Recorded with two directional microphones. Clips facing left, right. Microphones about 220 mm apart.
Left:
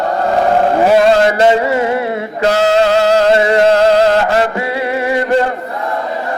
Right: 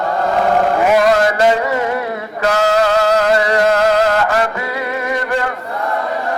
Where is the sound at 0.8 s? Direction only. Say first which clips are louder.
Left 4 dB; 30° left (ahead or behind).